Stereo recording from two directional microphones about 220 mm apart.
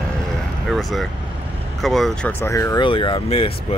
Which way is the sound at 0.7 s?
Centre (ahead or behind).